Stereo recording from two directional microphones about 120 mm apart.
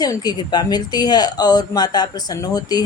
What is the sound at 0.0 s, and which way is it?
Speech, 35° left (ahead or behind).